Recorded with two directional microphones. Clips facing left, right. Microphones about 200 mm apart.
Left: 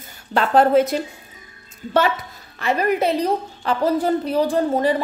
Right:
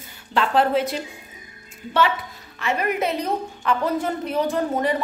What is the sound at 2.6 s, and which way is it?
A woman's voice, 35° left (ahead or behind).